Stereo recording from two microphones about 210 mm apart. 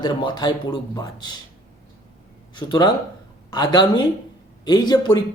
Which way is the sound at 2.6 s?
20° left (ahead or behind).